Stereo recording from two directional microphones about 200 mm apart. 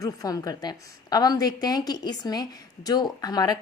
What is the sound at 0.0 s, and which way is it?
A woman's voice, 20° left (ahead or behind).